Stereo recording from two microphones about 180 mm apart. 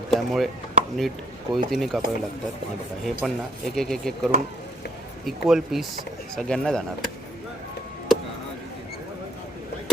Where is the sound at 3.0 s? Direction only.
Centre (ahead or behind).